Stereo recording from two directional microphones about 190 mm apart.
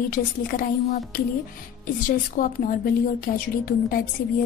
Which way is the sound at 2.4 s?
45° left (ahead or behind).